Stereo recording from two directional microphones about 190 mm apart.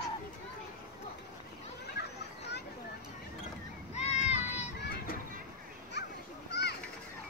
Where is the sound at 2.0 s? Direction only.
60° left (ahead or behind).